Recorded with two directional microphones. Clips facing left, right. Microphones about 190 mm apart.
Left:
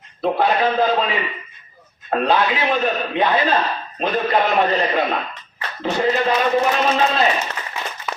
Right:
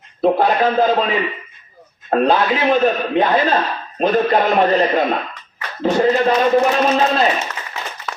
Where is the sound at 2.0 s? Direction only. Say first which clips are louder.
Right 3 dB; 40° right (ahead or behind).